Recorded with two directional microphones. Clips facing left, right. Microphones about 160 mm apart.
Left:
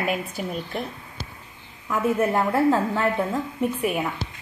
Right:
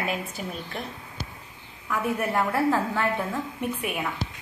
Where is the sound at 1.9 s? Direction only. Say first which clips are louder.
Left 5 dB; 25° left (ahead or behind).